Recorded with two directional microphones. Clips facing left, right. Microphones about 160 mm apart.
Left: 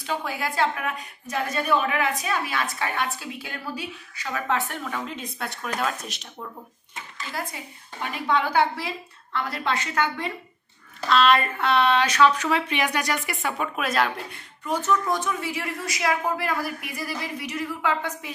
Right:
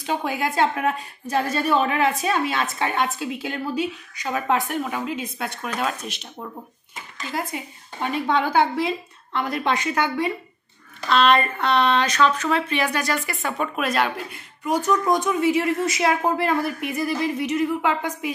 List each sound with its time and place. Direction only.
0.0 s a woman's voice: 20° right (ahead or behind)
5.0 s speech: 5° right (ahead or behind)
7.5 s a woman's voice: 25° right (ahead or behind)
11.1 s speech: centre (ahead or behind)
14.7 s a woman's voice: 15° right (ahead or behind)